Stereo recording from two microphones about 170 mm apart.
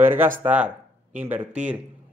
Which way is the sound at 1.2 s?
10° right (ahead or behind).